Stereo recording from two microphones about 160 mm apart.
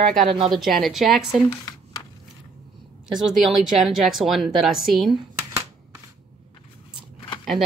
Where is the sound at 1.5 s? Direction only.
25° left (ahead or behind).